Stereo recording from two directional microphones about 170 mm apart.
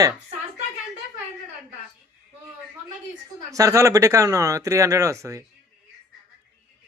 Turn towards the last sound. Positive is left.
turn(degrees=-20)  # may be behind; listen again after turning